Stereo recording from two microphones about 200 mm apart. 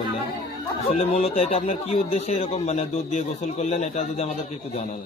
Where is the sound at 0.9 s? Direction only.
30° left (ahead or behind).